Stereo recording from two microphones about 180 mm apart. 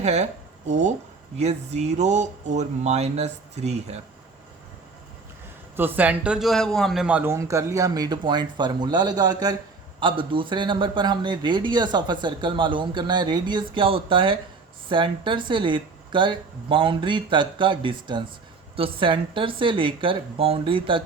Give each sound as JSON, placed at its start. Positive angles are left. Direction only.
{"t": 0.0, "sound": "speech", "side_deg": -40}
{"t": 5.7, "sound": "a man's voice", "side_deg": -10}